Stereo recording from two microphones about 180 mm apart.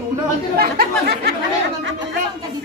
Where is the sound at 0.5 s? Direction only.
60° right (ahead or behind).